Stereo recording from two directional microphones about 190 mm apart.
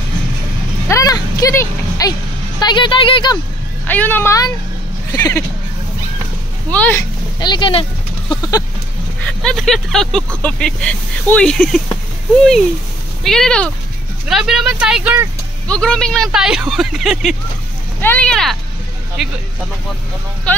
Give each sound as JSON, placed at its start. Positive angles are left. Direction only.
{"t": 0.8, "sound": "a sound", "side_deg": 15}
{"t": 2.6, "sound": "speech", "side_deg": 25}
{"t": 3.8, "sound": "speech", "side_deg": 10}
{"t": 6.7, "sound": "speech", "side_deg": 10}
{"t": 7.3, "sound": "speech", "side_deg": 25}
{"t": 8.3, "sound": "a sound", "side_deg": 20}
{"t": 9.2, "sound": "speech", "side_deg": 5}
{"t": 13.2, "sound": "speech", "side_deg": 0}